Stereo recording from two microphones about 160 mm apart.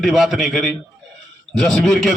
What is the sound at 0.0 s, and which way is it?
A man's voice, centre (ahead or behind).